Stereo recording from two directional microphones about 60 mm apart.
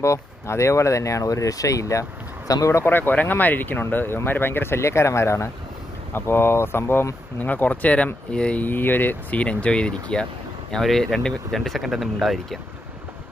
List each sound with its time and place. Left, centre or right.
0.0 s speech: left
2.7 s speech: left
7.3 s speech: left
8.6 s speech: left
9.4 s speech: centre
10.7 s speech: centre